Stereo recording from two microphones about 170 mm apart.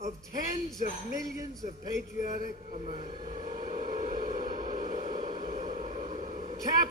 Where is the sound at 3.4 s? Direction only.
45° right (ahead or behind).